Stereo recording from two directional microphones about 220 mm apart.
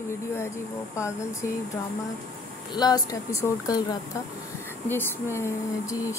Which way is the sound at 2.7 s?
20° left (ahead or behind).